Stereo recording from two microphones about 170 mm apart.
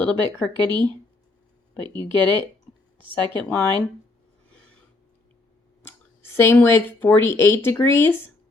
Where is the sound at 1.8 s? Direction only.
30° right (ahead or behind).